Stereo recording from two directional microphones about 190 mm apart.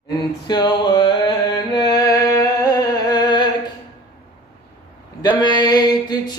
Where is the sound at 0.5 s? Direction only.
20° left (ahead or behind).